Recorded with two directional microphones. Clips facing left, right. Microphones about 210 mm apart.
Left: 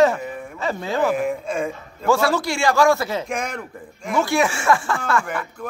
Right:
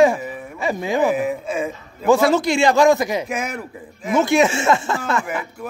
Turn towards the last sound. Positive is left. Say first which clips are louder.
# right 1 dB
turn(degrees=-5)  # may be behind; listen again after turning